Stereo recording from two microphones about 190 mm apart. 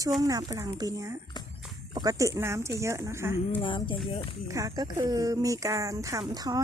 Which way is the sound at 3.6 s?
25° left (ahead or behind).